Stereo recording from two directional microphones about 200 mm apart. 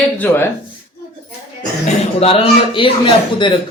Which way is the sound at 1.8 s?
30° left (ahead or behind).